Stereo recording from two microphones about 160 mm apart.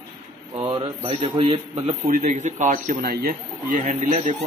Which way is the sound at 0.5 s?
20° right (ahead or behind).